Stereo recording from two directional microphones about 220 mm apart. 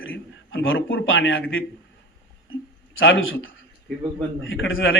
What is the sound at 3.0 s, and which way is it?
A man's voice, 60° left (ahead or behind).